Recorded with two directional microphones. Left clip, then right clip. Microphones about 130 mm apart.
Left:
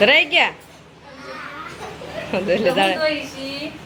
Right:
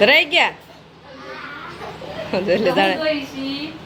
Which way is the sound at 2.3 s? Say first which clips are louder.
Right 1 dB; 10° right (ahead or behind).